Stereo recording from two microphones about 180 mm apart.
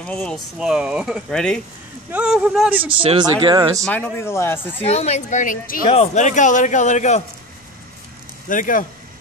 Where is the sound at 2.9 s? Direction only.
30° right (ahead or behind).